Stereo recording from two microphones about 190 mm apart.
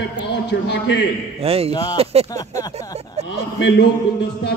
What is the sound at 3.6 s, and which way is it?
Speech, 65° left (ahead or behind).